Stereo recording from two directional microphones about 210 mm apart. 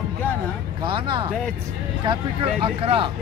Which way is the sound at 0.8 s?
25° right (ahead or behind).